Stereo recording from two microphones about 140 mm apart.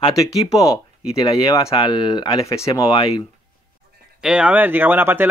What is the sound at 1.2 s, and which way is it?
Speech, 25° left (ahead or behind).